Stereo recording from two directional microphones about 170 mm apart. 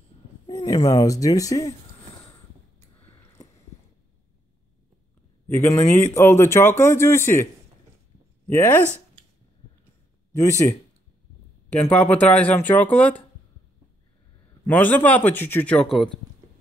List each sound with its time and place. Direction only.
0.5 s speech: 25° left (ahead or behind)
5.5 s speech: 15° left (ahead or behind)
8.5 s speech: 15° left (ahead or behind)
11.8 s speech: 10° left (ahead or behind)
14.7 s speech: 10° left (ahead or behind)